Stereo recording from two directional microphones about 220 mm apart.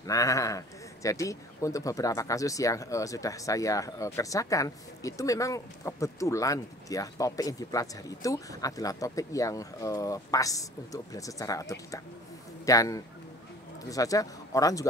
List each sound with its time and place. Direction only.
0.0 s speech: 15° left (ahead or behind)